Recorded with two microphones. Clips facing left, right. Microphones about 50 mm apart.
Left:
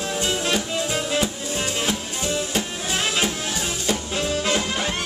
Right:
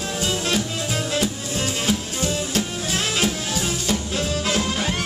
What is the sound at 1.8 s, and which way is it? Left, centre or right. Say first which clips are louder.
Music: right 2 dB; centre.